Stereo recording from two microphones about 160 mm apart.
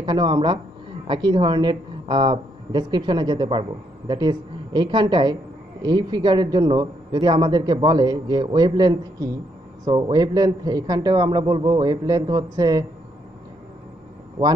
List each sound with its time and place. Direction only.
0.0 s a woman's voice: 30° right (ahead or behind)
14.4 s a woman's voice: 25° right (ahead or behind)